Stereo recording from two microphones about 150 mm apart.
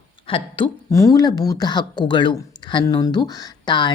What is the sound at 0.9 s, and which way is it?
Speech, 20° left (ahead or behind).